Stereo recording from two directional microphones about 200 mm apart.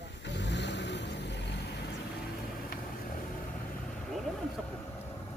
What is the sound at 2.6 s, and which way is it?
Vehicle, 45° left (ahead or behind).